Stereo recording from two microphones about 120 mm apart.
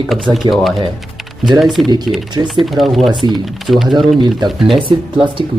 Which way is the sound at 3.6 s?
Centre (ahead or behind).